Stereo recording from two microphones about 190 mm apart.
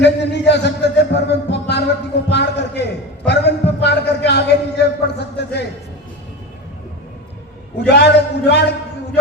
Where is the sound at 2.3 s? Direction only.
65° left (ahead or behind).